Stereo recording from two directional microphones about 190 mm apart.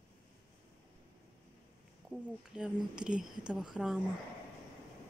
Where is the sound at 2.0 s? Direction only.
5° right (ahead or behind).